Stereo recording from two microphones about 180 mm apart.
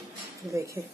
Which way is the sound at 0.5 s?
15° right (ahead or behind).